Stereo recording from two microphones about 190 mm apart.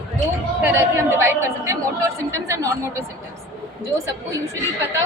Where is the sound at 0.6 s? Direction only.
10° right (ahead or behind).